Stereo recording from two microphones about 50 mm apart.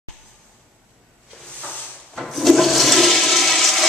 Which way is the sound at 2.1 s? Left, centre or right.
Centre.